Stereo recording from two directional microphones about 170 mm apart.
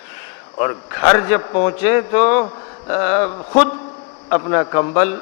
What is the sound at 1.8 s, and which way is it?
A man's voice, 15° left (ahead or behind).